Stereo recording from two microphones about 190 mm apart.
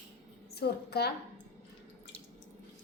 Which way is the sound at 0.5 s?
60° left (ahead or behind).